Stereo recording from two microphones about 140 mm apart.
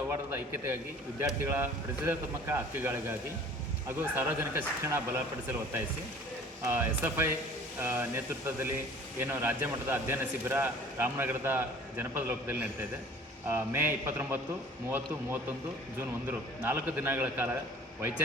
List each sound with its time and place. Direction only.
0.1 s a man's voice: 15° right (ahead or behind)
6.7 s a man's voice: 15° right (ahead or behind)